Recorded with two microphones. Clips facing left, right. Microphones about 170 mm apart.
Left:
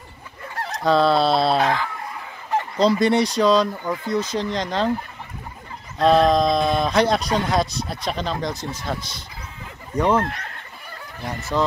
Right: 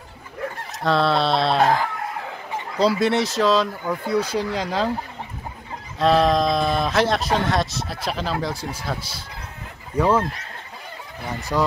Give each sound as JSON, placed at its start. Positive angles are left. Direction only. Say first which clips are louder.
{"t": 0.8, "sound": "speech", "louder": "left 2 dB", "side_deg": 0}
{"t": 1.6, "sound": "speech", "louder": "right 3 dB", "side_deg": -45}
{"t": 2.8, "sound": "speech", "louder": "left 1 dB", "side_deg": -5}
{"t": 5.9, "sound": "speech", "louder": "left 2 dB", "side_deg": 0}
{"t": 9.9, "sound": "speech", "louder": "even", "side_deg": -5}
{"t": 11.5, "sound": "speech", "louder": "even", "side_deg": -5}